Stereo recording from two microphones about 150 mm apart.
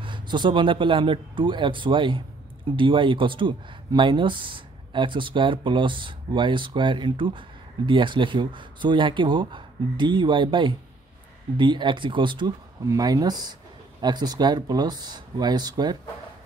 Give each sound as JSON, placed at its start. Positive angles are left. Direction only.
{"t": 0.0, "sound": "speech", "side_deg": -30}